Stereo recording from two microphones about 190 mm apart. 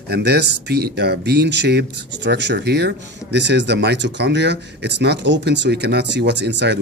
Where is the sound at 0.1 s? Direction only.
60° right (ahead or behind).